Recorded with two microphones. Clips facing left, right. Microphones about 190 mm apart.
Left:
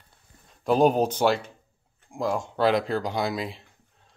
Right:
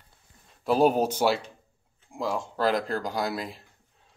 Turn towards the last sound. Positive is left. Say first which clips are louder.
# left 2 dB
turn(degrees=0)  # may be behind; listen again after turning